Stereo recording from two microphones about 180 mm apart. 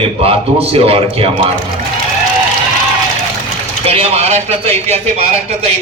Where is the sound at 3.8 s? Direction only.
35° right (ahead or behind).